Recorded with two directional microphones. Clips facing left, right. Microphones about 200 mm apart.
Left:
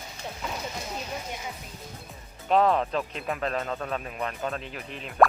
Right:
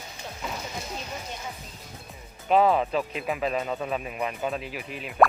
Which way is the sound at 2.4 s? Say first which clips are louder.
Right 1 dB; 5° right (ahead or behind).